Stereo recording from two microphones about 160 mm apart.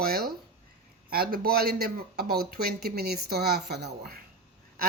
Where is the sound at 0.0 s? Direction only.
75° right (ahead or behind).